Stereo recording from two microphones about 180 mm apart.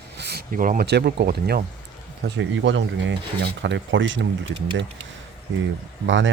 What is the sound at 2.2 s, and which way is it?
Speech, 85° right.